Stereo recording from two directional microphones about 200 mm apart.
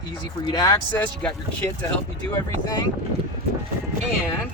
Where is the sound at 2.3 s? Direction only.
20° left (ahead or behind).